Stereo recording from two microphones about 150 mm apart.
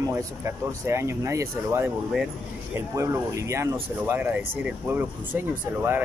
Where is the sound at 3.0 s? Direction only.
20° right (ahead or behind).